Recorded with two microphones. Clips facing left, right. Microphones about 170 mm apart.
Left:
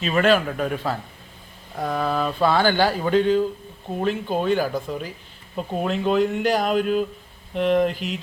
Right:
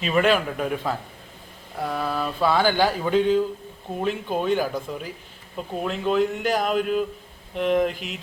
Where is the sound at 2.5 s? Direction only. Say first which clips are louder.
Even; 10° right (ahead or behind).